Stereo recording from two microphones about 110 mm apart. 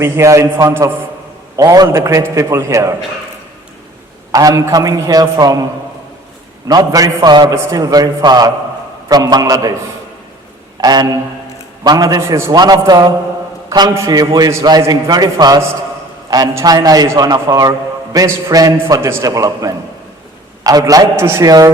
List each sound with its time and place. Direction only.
0.0 s a man's voice: 25° right (ahead or behind)
1.5 s a man's voice: 30° right (ahead or behind)
4.3 s a man's voice: 35° right (ahead or behind)
6.7 s a man's voice: 35° right (ahead or behind)
7.5 s a man's voice: 30° right (ahead or behind)
10.8 s a man's voice: 35° right (ahead or behind)
16.6 s a man's voice: 35° right (ahead or behind)